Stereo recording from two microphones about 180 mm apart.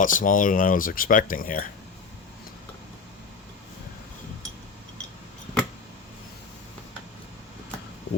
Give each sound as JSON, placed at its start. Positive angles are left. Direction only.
{"t": 0.0, "sound": "speech", "side_deg": 50}